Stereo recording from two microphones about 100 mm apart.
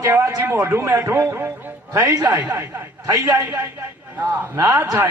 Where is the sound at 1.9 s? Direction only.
35° right (ahead or behind).